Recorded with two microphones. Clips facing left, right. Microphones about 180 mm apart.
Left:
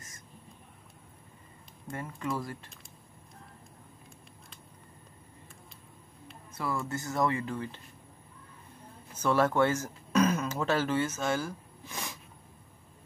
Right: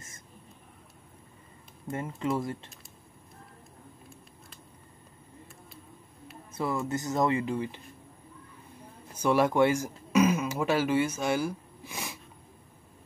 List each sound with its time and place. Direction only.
1.9 s speech: 20° right (ahead or behind)
6.5 s speech: 20° right (ahead or behind)
9.1 s a sound: 15° right (ahead or behind)